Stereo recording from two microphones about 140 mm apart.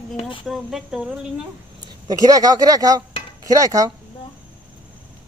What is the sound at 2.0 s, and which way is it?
Speech, 25° right (ahead or behind).